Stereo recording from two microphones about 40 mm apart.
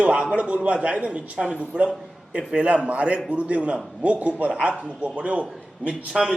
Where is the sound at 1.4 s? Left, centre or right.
Centre.